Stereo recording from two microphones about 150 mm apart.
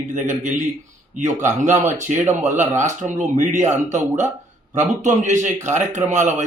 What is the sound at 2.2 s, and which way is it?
A man's voice, 50° right (ahead or behind).